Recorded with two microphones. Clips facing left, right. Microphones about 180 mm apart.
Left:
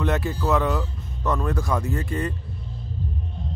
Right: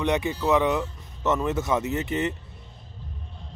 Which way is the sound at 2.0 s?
20° right (ahead or behind).